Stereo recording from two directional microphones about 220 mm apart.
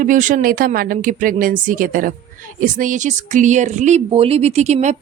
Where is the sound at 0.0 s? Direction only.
35° right (ahead or behind).